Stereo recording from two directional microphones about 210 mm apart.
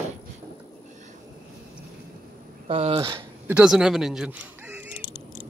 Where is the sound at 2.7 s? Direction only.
25° right (ahead or behind).